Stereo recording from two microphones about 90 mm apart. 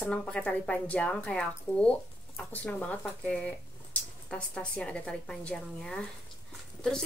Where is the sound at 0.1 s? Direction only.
10° left (ahead or behind).